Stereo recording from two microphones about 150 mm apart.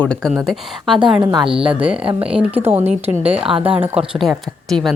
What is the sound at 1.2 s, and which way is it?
Speech, 30° right (ahead or behind).